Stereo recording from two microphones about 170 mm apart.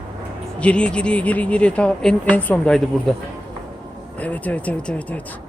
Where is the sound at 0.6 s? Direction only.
5° left (ahead or behind).